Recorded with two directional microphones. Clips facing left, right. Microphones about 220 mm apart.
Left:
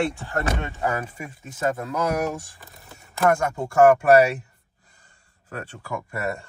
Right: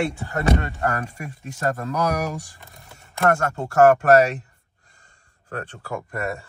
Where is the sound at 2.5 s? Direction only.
Centre (ahead or behind).